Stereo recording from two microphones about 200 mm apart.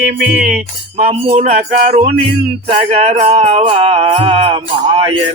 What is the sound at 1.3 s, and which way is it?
Music, 35° right (ahead or behind).